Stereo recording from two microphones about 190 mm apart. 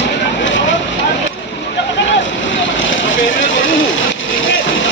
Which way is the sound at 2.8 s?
85° left.